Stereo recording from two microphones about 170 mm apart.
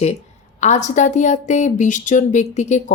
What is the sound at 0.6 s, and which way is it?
A woman's voice, 45° left (ahead or behind).